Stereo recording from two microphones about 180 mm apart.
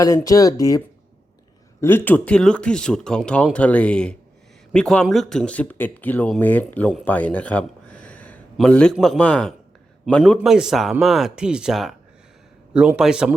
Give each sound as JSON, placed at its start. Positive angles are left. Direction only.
{"t": 0.0, "sound": "speech", "side_deg": 20}
{"t": 1.8, "sound": "speech", "side_deg": 10}